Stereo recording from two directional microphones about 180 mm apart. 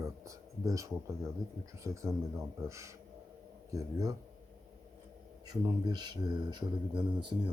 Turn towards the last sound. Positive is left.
turn(degrees=-25)  # may be behind; listen again after turning